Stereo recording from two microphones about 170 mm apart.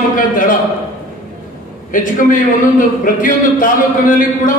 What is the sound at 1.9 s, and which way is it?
A man's voice, 50° left (ahead or behind).